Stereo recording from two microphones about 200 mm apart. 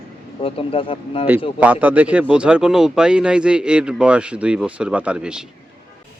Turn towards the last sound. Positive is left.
turn(degrees=-5)  # may be behind; listen again after turning